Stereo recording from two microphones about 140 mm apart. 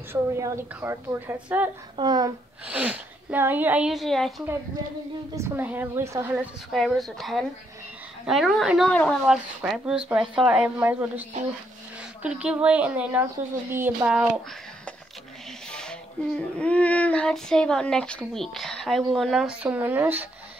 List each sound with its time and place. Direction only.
0.1 s a woman's voice: 20° right (ahead or behind)
2.0 s speech: 30° right (ahead or behind)
2.6 s a woman's voice: 10° right (ahead or behind)
5.3 s a woman's voice: 15° right (ahead or behind)
6.7 s a woman's voice: centre (ahead or behind)
15.7 s speech: 5° left (ahead or behind); by 20.2 s 10° right (ahead or behind)